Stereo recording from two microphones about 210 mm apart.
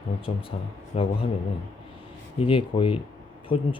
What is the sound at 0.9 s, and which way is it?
Speech, 30° left (ahead or behind).